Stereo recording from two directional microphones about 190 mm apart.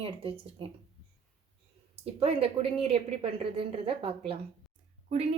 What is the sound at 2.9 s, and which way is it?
A woman's voice, 30° right (ahead or behind).